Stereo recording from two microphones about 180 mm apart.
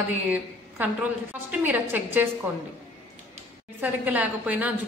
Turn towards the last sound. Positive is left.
turn(degrees=-10)  # may be behind; listen again after turning